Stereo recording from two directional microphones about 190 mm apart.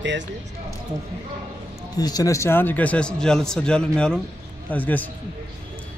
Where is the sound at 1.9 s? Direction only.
20° left (ahead or behind).